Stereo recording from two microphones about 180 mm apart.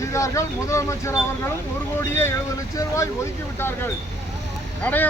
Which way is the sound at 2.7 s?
20° left (ahead or behind).